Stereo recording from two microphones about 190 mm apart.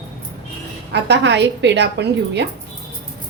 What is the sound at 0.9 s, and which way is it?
A woman's voice, 65° right (ahead or behind).